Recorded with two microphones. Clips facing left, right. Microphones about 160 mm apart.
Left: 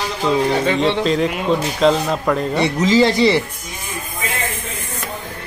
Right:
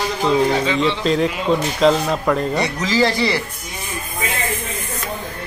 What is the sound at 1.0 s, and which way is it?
Speech, centre (ahead or behind).